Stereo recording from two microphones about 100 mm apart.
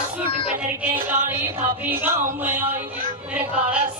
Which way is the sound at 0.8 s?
20° right (ahead or behind).